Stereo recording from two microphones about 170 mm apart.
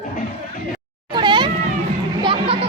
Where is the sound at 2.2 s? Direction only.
30° right (ahead or behind).